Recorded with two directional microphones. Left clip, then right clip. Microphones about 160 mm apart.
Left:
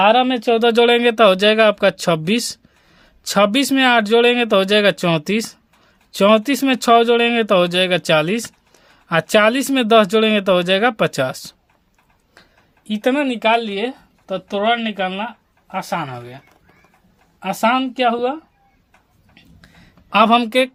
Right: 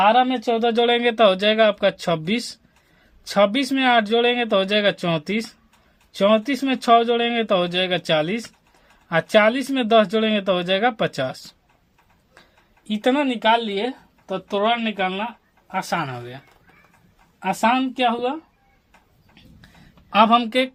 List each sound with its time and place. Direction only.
0.0 s speech: 60° left (ahead or behind); by 11.5 s 45° left (ahead or behind)
12.9 s speech: 25° left (ahead or behind)
15.7 s speech: 15° left (ahead or behind)
17.4 s speech: 25° left (ahead or behind)
19.3 s a sound: 50° left (ahead or behind)